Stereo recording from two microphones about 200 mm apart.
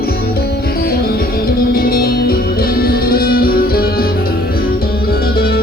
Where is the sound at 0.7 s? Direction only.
50° left (ahead or behind).